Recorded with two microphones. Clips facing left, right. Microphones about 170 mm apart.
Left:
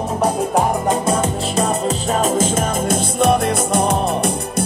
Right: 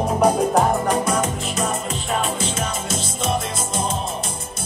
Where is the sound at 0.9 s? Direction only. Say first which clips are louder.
Left 3 dB; 25° left (ahead or behind).